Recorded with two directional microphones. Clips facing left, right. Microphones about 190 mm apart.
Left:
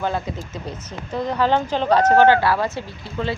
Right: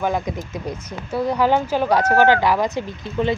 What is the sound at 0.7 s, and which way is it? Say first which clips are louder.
A woman's voice: right 3 dB; 10° right (ahead or behind).